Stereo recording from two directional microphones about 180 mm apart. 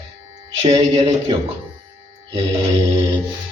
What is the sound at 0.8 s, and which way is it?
Speech, 25° right (ahead or behind).